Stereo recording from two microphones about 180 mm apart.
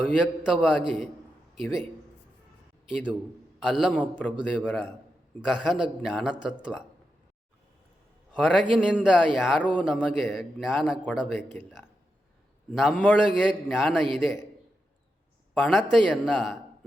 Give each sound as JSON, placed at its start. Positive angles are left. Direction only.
{"t": 0.1, "sound": "a man's voice", "side_deg": -5}
{"t": 3.6, "sound": "a man's voice", "side_deg": 0}
{"t": 8.3, "sound": "a man's voice", "side_deg": -5}
{"t": 9.6, "sound": "a man's voice", "side_deg": 10}
{"t": 9.8, "sound": "a man's voice", "side_deg": -5}
{"t": 12.7, "sound": "a man's voice", "side_deg": 0}
{"t": 15.5, "sound": "a man's voice", "side_deg": 0}